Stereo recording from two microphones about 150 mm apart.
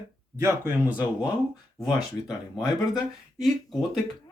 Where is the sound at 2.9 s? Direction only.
Centre (ahead or behind).